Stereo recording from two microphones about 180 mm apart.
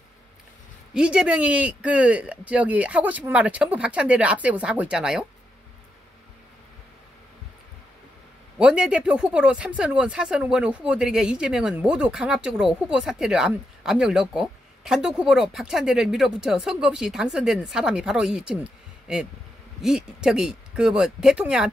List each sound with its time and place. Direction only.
0.9 s speech: 5° right (ahead or behind)
8.5 s speech: 5° right (ahead or behind)